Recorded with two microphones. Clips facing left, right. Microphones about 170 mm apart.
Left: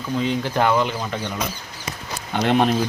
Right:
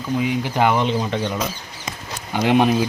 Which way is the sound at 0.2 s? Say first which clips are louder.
Even; 15° right (ahead or behind).